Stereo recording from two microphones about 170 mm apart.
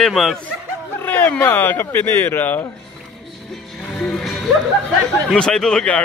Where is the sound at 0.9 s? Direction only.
10° left (ahead or behind).